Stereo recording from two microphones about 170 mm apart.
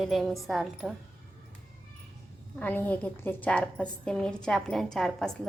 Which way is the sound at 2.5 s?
10° left (ahead or behind).